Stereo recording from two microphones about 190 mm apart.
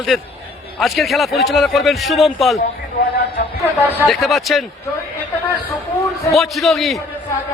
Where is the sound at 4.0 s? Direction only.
Centre (ahead or behind).